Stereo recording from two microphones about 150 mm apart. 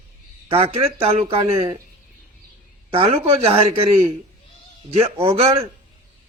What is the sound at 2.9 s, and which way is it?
A man's voice, 40° right (ahead or behind).